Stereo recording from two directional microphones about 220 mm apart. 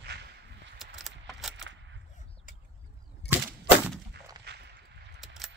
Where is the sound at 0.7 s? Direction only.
Centre (ahead or behind).